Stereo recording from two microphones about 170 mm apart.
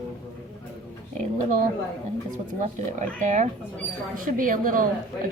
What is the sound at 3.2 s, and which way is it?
A woman's voice, 45° right (ahead or behind).